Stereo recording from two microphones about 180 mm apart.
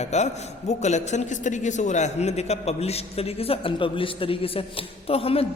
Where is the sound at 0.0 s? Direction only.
40° left (ahead or behind).